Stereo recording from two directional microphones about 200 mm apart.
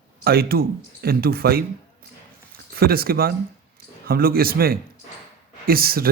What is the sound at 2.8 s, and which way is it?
A man's voice, 50° right (ahead or behind).